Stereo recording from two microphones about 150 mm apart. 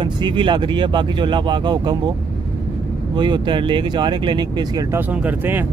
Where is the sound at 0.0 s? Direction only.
35° right (ahead or behind).